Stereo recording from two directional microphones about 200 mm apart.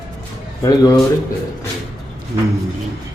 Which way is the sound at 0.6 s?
15° left (ahead or behind).